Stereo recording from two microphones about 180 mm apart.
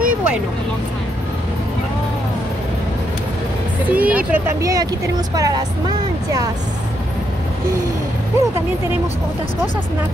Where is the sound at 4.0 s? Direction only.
10° right (ahead or behind).